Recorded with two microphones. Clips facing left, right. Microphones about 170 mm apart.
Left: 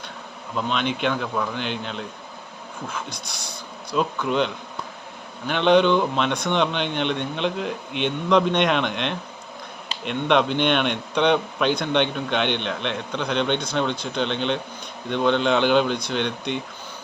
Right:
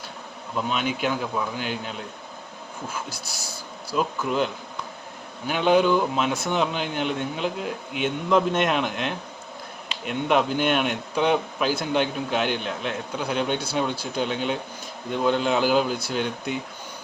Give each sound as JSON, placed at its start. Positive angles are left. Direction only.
{"t": 0.5, "sound": "a man's voice", "side_deg": -5}